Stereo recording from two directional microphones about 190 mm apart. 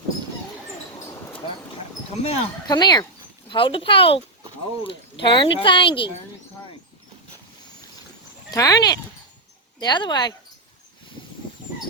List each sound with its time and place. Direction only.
2.2 s speech: 20° left (ahead or behind)
8.4 s speech: 20° left (ahead or behind)